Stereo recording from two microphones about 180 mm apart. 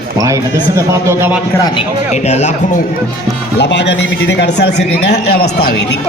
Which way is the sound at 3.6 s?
75° left (ahead or behind).